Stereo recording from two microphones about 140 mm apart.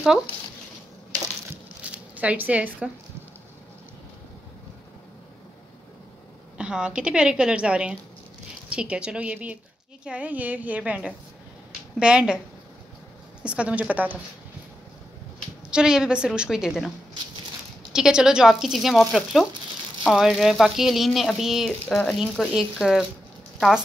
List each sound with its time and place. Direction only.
1.5 s squish: 10° right (ahead or behind)
6.6 s a woman's voice: 5° right (ahead or behind)
13.4 s a woman's voice: 10° right (ahead or behind)
15.7 s speech: 5° right (ahead or behind)
17.9 s speech: 5° right (ahead or behind)
21.6 s speech: 10° left (ahead or behind)